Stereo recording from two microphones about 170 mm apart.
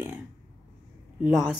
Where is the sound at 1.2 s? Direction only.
5° right (ahead or behind).